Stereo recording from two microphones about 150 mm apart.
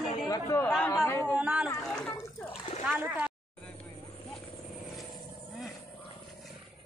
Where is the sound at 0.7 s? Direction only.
5° left (ahead or behind).